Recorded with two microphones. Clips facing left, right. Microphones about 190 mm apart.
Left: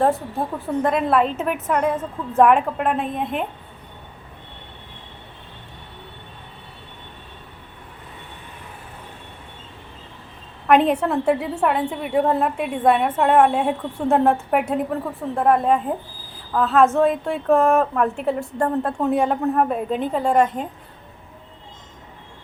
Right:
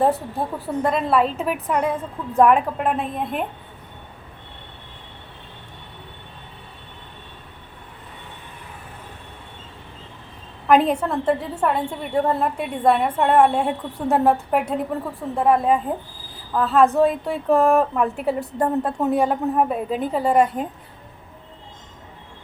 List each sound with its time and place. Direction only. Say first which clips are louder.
0.0 s a woman's voice: even; centre (ahead or behind)
10.7 s a woman's voice: left 1 dB; centre (ahead or behind)